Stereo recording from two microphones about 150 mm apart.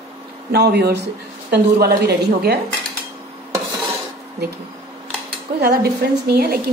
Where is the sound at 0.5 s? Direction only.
90° right.